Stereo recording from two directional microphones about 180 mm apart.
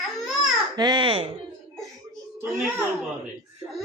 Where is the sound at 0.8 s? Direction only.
25° right (ahead or behind).